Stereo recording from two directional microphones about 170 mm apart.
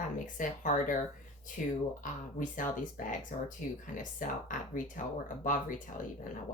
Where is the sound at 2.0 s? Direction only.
50° left (ahead or behind).